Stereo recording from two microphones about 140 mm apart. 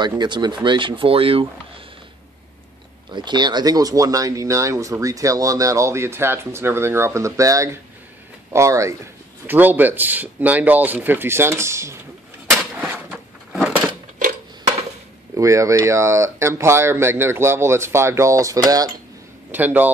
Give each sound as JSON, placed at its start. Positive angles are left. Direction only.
{"t": 0.0, "sound": "speech", "side_deg": -30}
{"t": 3.3, "sound": "speech", "side_deg": -30}
{"t": 12.4, "sound": "a sound", "side_deg": -5}
{"t": 15.3, "sound": "speech", "side_deg": -20}
{"t": 19.5, "sound": "speech", "side_deg": -15}